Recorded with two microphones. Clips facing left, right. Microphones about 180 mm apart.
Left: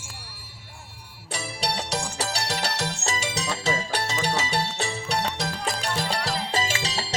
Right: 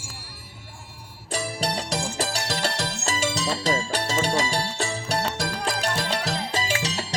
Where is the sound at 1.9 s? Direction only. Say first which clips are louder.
Right 2 dB; 70° left (ahead or behind).